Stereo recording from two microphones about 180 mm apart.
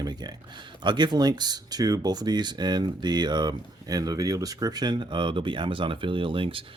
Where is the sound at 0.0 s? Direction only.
20° right (ahead or behind).